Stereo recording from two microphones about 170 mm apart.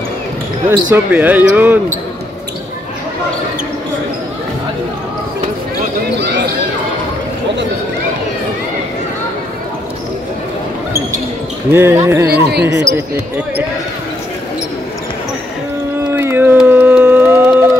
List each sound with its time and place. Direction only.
0.9 s speech: 10° right (ahead or behind)
11.7 s speech: 15° right (ahead or behind)
12.3 s speech: 75° right (ahead or behind)
16.1 s a sound: 15° right (ahead or behind)